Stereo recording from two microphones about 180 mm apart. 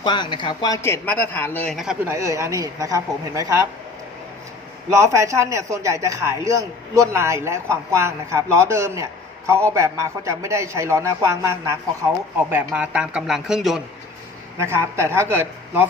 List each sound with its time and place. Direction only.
0.0 s speech: 25° left (ahead or behind); by 1.7 s 10° left (ahead or behind)
1.7 s speech: 5° right (ahead or behind)
2.0 s a man's voice: 15° right (ahead or behind)
4.9 s a man's voice: 15° right (ahead or behind)
12.4 s speech: 10° right (ahead or behind)
14.6 s a man's voice: 15° right (ahead or behind)